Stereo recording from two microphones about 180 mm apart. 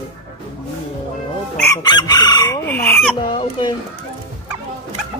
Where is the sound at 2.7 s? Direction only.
10° left (ahead or behind).